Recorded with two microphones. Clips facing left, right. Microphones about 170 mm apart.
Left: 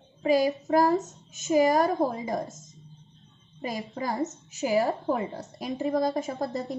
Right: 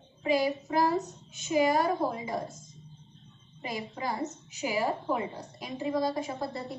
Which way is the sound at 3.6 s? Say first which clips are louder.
Left 3 dB; 45° left (ahead or behind).